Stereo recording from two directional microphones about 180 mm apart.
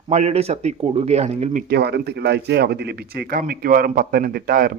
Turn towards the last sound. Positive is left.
turn(degrees=-55)  # may be behind; listen again after turning